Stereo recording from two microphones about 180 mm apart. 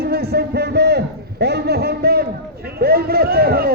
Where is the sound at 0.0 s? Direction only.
60° right (ahead or behind).